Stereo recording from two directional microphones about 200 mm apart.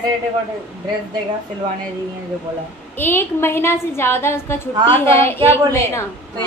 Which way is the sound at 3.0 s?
10° left (ahead or behind).